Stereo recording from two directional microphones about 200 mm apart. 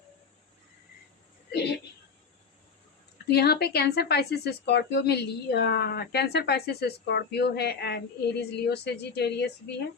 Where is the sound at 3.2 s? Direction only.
50° left (ahead or behind).